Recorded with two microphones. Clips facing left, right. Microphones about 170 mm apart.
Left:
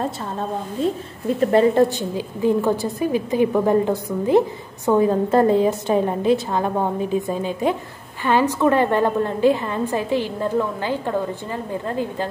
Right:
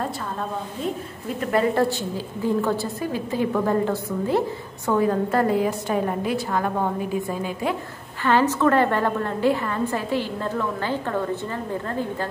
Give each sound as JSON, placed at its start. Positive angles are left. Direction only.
{"t": 1.4, "sound": "a woman's voice", "side_deg": 25}